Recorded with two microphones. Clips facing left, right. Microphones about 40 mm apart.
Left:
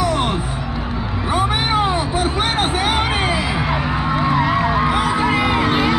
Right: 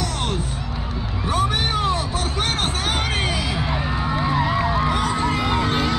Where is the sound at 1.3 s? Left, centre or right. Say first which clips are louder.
Left 4 dB; centre.